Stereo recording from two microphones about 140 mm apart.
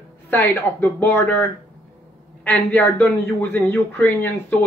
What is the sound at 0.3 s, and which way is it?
A man's voice, 15° left (ahead or behind).